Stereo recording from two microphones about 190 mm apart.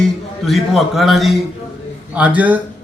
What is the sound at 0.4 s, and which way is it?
A man's voice, centre (ahead or behind).